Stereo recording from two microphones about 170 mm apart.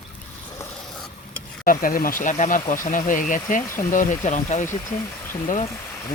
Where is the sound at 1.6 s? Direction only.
55° left (ahead or behind).